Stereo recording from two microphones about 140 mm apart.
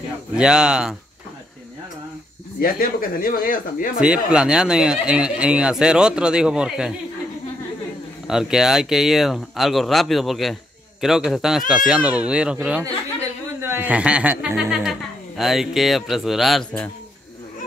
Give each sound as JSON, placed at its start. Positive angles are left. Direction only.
{"t": 0.3, "sound": "speech", "side_deg": -5}
{"t": 2.6, "sound": "speech", "side_deg": 90}
{"t": 4.0, "sound": "speech", "side_deg": -5}
{"t": 8.3, "sound": "speech", "side_deg": -5}